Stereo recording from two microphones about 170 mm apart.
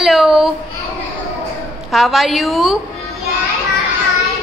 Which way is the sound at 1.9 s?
Centre (ahead or behind).